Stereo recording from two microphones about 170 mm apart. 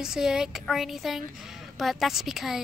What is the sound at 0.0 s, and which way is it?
A woman's voice, 5° right (ahead or behind).